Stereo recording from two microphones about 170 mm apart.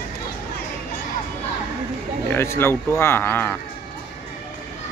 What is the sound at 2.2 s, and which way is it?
Speech, 15° left (ahead or behind).